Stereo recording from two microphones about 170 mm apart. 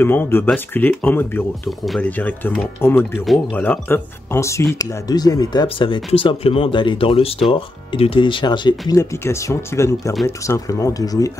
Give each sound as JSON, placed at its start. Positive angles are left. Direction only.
{"t": 0.0, "sound": "speech", "side_deg": 15}